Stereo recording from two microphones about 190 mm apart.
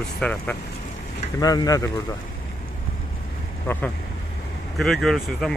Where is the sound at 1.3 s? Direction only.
20° left (ahead or behind).